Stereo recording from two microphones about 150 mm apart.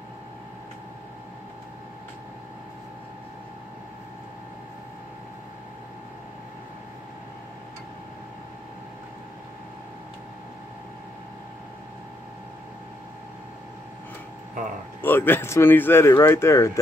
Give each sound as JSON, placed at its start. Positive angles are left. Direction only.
{"t": 15.0, "sound": "speech", "side_deg": 15}